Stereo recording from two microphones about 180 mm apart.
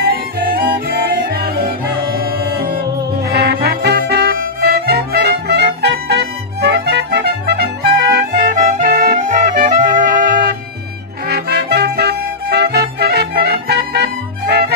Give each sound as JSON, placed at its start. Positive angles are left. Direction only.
{"t": 0.0, "sound": "music", "side_deg": -55}
{"t": 8.1, "sound": "music", "side_deg": -55}